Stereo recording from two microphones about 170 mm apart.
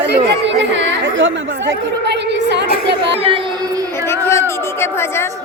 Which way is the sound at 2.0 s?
90° right.